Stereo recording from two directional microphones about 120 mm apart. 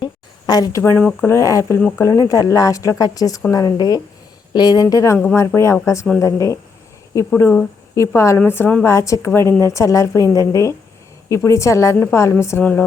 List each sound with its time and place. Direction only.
0.0 s a sound: 30° left (ahead or behind)
0.9 s speech: 5° left (ahead or behind)
1.3 s a woman's voice: 25° left (ahead or behind)
5.1 s a woman's voice: 15° left (ahead or behind)
7.3 s speech: 15° left (ahead or behind)
7.9 s a woman's voice: 25° left (ahead or behind)